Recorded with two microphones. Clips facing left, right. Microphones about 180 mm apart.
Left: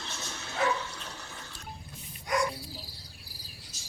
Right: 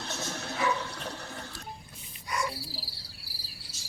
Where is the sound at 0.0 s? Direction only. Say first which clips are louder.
Right 5 dB; 60° right (ahead or behind).